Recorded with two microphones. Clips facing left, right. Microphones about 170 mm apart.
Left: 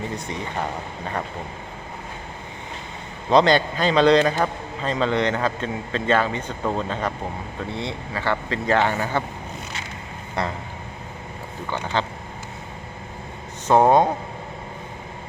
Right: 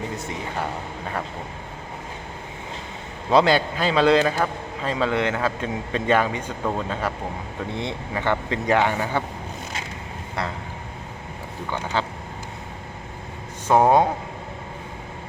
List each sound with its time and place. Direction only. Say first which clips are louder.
3.2 s a man's voice: left 1 dB; 5° right (ahead or behind)
7.7 s a man's voice: right 1 dB; 20° right (ahead or behind)
11.9 s a man's voice: left 1 dB; 10° right (ahead or behind)
13.7 s a man's voice: left 1 dB; 10° right (ahead or behind)